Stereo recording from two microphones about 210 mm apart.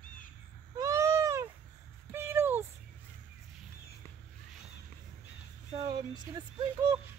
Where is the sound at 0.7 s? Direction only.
15° right (ahead or behind).